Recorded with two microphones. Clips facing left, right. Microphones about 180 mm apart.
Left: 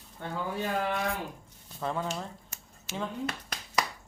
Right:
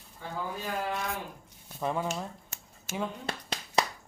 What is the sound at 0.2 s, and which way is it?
Speech, 65° left (ahead or behind).